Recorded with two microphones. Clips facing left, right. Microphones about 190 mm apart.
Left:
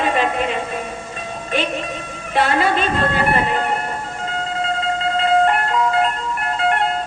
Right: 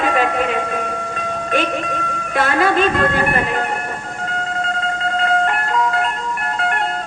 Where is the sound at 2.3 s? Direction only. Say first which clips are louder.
Right 1 dB; 45° right (ahead or behind).